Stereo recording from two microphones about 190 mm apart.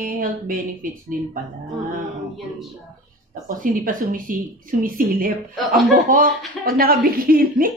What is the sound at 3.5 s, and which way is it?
Speech, 45° right (ahead or behind).